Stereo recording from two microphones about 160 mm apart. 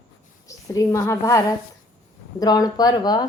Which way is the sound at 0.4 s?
20° left (ahead or behind).